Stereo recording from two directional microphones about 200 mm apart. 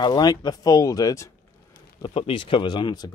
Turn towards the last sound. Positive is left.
turn(degrees=20)  # may be behind; listen again after turning